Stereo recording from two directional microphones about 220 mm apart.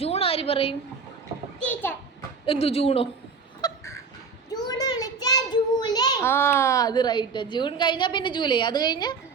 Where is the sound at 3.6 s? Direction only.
15° left (ahead or behind).